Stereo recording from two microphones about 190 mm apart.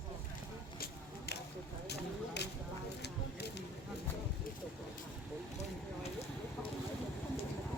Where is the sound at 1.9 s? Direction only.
60° left (ahead or behind).